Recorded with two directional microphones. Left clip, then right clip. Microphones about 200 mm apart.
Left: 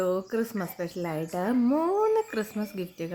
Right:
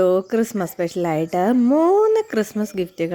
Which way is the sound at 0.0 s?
40° right (ahead or behind).